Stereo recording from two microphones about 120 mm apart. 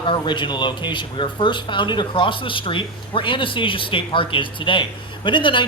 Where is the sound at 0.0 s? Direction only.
45° left (ahead or behind).